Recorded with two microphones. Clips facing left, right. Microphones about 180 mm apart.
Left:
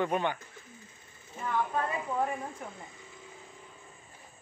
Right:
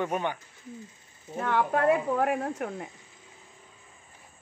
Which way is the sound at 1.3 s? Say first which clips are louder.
Right 5 dB; 75° right (ahead or behind).